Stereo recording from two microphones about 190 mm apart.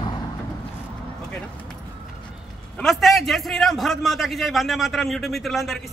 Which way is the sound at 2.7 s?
Centre (ahead or behind).